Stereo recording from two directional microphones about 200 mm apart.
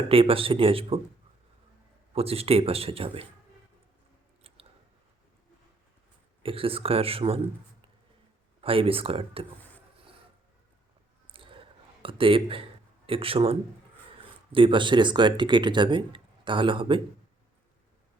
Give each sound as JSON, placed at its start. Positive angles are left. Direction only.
{"t": 0.1, "sound": "speech", "side_deg": -30}
{"t": 2.1, "sound": "speech", "side_deg": -30}
{"t": 4.4, "sound": "chewing", "side_deg": -30}
{"t": 6.4, "sound": "speech", "side_deg": -25}
{"t": 8.6, "sound": "speech", "side_deg": -30}
{"t": 11.3, "sound": "a sound", "side_deg": -25}
{"t": 13.1, "sound": "speech", "side_deg": -25}